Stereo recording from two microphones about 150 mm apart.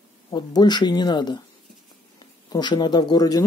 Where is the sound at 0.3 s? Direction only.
30° left (ahead or behind).